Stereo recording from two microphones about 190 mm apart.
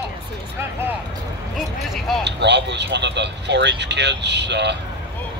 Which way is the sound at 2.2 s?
65° right (ahead or behind).